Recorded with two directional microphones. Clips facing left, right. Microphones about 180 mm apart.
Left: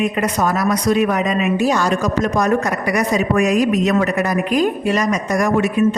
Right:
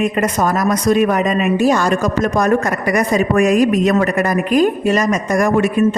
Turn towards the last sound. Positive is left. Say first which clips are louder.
# right 2 dB
turn(degrees=-50)  # may be behind; listen again after turning